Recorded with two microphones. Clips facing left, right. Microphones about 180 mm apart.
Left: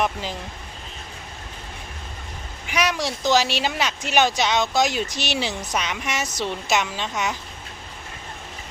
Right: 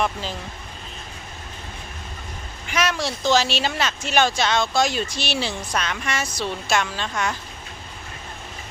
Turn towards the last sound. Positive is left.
turn(degrees=20)  # may be behind; listen again after turning